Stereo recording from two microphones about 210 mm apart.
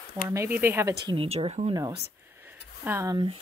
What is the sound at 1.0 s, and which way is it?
Speech, 25° right (ahead or behind).